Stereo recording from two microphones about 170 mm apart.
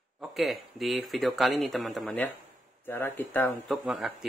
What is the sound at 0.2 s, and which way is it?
Speech, centre (ahead or behind).